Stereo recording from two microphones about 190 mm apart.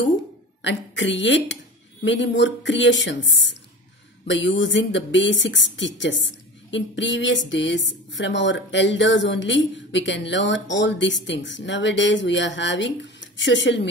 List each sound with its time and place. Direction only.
0.6 s a woman's voice: 70° left (ahead or behind)